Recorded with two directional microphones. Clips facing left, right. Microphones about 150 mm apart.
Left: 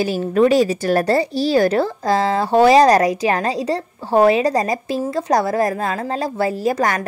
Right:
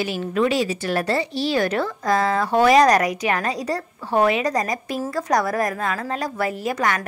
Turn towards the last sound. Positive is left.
turn(degrees=35)  # may be behind; listen again after turning